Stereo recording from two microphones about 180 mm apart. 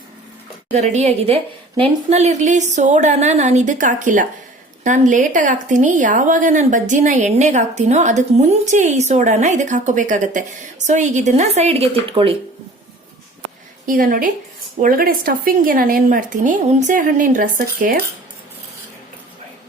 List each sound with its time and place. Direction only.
0.7 s a woman's voice: 35° right (ahead or behind)
13.8 s a woman's voice: 50° right (ahead or behind)